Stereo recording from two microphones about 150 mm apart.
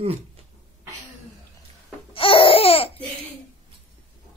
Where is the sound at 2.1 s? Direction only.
35° left (ahead or behind).